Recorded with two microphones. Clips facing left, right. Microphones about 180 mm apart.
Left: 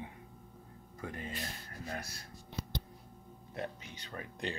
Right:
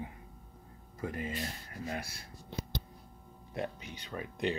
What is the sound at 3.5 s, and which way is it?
Speech, 20° right (ahead or behind).